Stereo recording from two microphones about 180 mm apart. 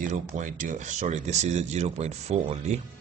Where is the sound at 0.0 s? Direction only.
45° right (ahead or behind).